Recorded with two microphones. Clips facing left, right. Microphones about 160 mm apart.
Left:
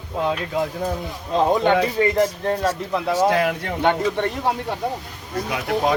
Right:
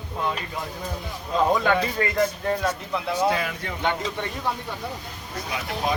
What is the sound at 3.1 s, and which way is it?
A man's voice, 65° left (ahead or behind).